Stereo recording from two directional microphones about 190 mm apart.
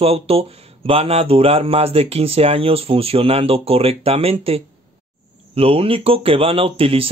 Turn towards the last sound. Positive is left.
turn(degrees=-30)  # may be behind; listen again after turning